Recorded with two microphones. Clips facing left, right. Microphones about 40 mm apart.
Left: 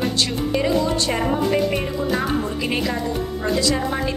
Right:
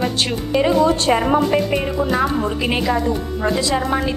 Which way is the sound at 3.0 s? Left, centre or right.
Right.